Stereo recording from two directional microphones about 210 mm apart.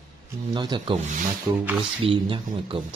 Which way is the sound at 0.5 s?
20° right (ahead or behind).